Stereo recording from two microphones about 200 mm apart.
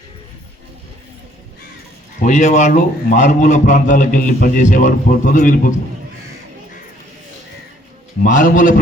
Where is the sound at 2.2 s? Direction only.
35° left (ahead or behind).